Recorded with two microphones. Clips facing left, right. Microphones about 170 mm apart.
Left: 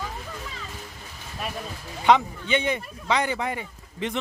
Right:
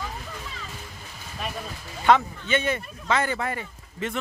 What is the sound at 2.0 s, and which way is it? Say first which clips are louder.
Speech: even; 15° left (ahead or behind).